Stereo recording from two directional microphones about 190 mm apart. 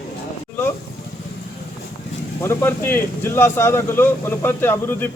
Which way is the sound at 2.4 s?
10° left (ahead or behind).